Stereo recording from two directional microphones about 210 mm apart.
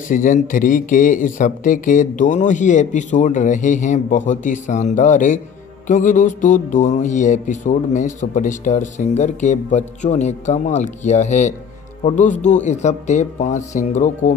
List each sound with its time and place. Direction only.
0.1 s speech: 40° left (ahead or behind)